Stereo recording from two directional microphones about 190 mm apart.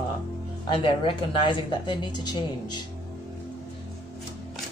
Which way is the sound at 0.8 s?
25° left (ahead or behind).